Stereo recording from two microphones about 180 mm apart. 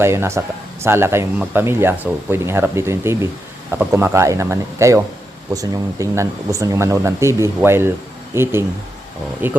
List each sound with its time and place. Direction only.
0.0 s speech: 15° right (ahead or behind)